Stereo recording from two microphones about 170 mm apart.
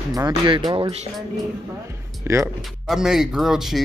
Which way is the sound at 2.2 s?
15° right (ahead or behind).